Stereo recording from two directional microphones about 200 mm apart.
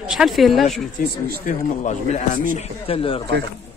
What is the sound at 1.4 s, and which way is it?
A man's voice, 35° left (ahead or behind).